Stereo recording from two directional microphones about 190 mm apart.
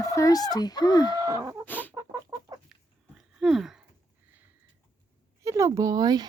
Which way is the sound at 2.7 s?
Centre (ahead or behind).